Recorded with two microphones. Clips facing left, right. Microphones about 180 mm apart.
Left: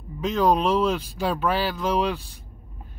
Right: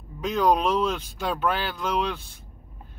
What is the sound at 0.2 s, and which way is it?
Speech, centre (ahead or behind).